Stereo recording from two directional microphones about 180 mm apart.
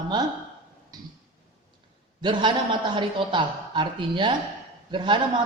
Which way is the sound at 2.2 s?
25° right (ahead or behind).